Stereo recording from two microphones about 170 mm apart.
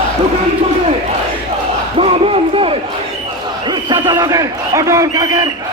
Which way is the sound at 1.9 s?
35° right (ahead or behind).